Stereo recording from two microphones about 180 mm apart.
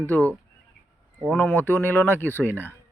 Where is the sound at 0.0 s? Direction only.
10° left (ahead or behind).